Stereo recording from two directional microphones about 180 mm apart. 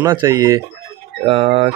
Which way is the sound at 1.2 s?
30° right (ahead or behind).